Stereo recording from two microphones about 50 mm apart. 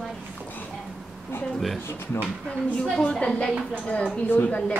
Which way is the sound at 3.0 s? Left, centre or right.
Left.